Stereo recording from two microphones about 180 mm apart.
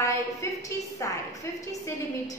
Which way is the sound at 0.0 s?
15° left (ahead or behind).